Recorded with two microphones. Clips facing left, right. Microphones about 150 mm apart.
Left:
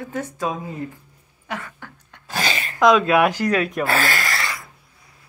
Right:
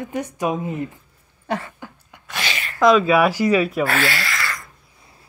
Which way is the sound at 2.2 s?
35° left (ahead or behind).